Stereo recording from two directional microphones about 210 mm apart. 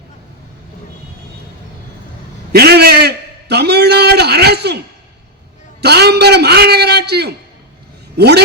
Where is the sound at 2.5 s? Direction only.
50° right (ahead or behind).